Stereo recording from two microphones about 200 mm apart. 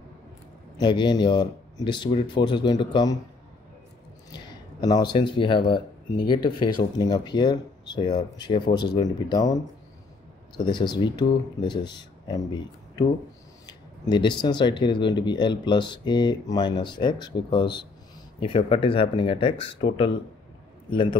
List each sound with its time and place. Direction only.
0.7 s speech: 25° left (ahead or behind)
4.3 s a sound: 20° left (ahead or behind)
5.1 s speech: 25° left (ahead or behind)
10.6 s speech: 20° left (ahead or behind)